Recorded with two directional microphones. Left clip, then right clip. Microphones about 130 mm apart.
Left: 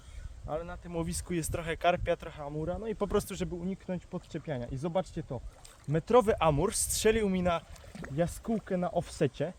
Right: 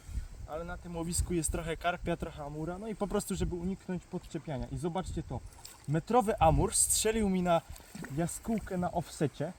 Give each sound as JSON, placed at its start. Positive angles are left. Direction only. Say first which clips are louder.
{"t": 0.4, "sound": "speech", "louder": "left 3 dB", "side_deg": 40}